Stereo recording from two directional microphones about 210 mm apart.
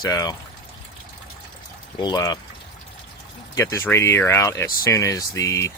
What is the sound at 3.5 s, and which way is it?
Speech, 15° left (ahead or behind).